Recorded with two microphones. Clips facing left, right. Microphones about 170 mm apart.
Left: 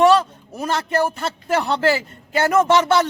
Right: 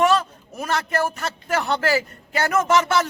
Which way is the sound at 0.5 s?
30° left (ahead or behind).